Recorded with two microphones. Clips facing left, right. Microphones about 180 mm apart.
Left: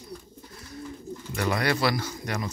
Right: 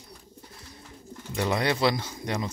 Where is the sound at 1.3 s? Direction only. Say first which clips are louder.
Even; 20° right (ahead or behind).